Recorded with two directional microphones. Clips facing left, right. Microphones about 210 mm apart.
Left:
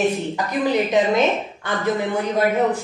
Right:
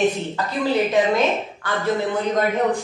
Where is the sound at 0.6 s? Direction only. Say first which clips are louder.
Even; 15° left (ahead or behind).